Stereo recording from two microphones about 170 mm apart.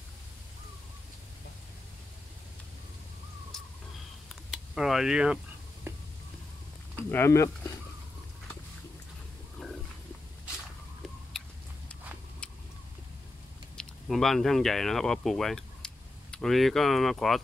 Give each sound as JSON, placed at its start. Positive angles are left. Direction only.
{"t": 4.5, "sound": "speech", "side_deg": 0}
{"t": 7.0, "sound": "speech", "side_deg": 15}
{"t": 13.7, "sound": "speech", "side_deg": 0}